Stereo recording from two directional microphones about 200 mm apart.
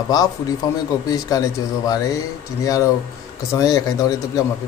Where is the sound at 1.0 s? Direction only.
20° left (ahead or behind).